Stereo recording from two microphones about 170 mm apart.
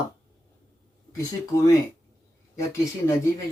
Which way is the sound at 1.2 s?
20° left (ahead or behind).